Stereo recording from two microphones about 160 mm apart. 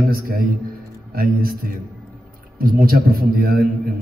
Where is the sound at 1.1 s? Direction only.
65° right (ahead or behind).